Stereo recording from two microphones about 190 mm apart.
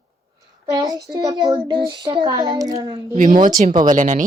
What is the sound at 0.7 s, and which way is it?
A child's voice, 20° right (ahead or behind).